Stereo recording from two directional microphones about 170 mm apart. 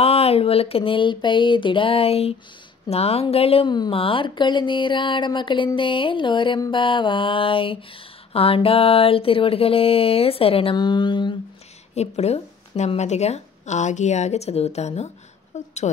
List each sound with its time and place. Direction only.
0.0 s speech: 35° left (ahead or behind)
11.9 s a woman's voice: 40° left (ahead or behind)